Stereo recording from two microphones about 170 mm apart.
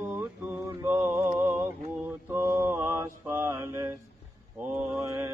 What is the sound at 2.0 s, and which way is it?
Mantra, 15° right (ahead or behind).